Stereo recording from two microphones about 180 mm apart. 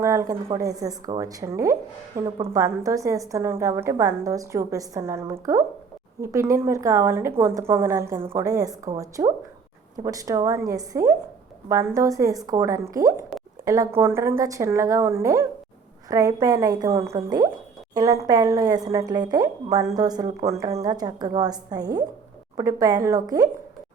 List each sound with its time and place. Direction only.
0.0 s a woman's voice: 15° right (ahead or behind)